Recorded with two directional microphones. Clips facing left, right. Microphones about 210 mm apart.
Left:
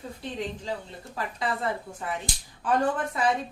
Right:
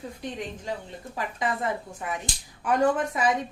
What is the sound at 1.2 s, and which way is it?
A woman's voice, 15° right (ahead or behind).